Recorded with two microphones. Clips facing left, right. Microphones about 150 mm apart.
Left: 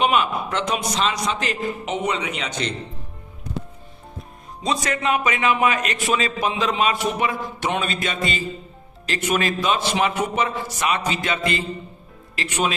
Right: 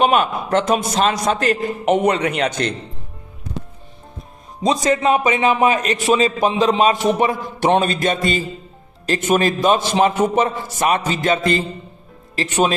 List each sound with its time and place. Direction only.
0.0 s a man's voice: 45° right (ahead or behind)
4.8 s a man's voice: 25° right (ahead or behind)
10.4 s a man's voice: 45° right (ahead or behind)